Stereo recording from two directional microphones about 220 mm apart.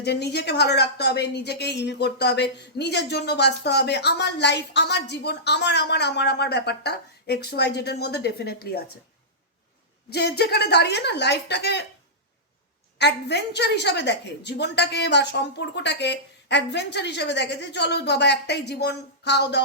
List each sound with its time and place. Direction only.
0.0 s speech: 50° left (ahead or behind)
10.1 s speech: 50° left (ahead or behind)
13.0 s speech: 50° left (ahead or behind)